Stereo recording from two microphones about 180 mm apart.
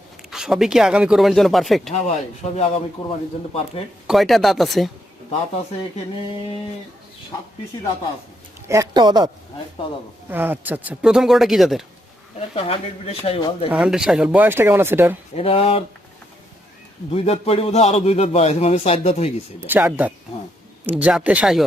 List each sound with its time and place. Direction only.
0.3 s speech: 5° right (ahead or behind)
1.9 s a man's voice: 40° left (ahead or behind)
4.0 s speech: centre (ahead or behind)
8.6 s speech: 15° right (ahead or behind)
10.2 s speech: 10° right (ahead or behind)
12.5 s a man's voice: 30° left (ahead or behind)
13.7 s speech: 5° right (ahead or behind)
15.4 s a man's voice: 30° left (ahead or behind)
17.1 s a man's voice: 35° left (ahead or behind)
19.6 s speech: 10° right (ahead or behind)